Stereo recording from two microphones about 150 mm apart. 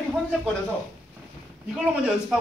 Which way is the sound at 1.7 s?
5° right (ahead or behind).